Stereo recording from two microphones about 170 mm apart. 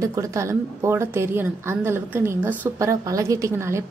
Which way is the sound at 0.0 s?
20° right (ahead or behind).